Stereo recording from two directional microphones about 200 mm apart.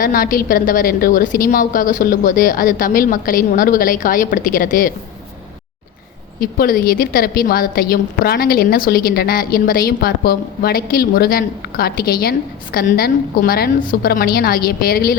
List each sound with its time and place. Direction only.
0.0 s a woman's voice: 45° left (ahead or behind)
6.4 s a woman's voice: 45° left (ahead or behind)